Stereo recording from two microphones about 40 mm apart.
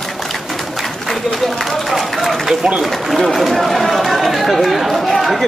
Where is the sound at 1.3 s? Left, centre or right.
Centre.